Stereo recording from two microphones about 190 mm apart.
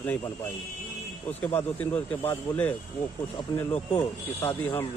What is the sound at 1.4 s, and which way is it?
Speech, 10° left (ahead or behind).